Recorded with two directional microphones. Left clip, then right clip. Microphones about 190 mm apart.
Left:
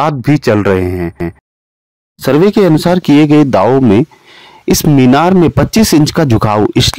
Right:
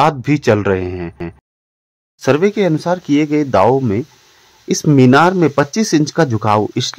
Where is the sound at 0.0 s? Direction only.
30° left (ahead or behind).